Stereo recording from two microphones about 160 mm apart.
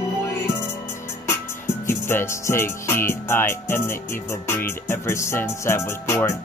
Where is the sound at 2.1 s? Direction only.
15° left (ahead or behind).